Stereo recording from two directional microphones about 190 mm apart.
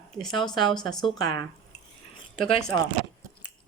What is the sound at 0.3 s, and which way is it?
Speech, 20° left (ahead or behind).